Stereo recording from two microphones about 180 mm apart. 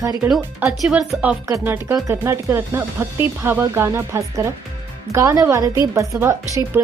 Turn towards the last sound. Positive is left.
turn(degrees=-15)  # may be behind; listen again after turning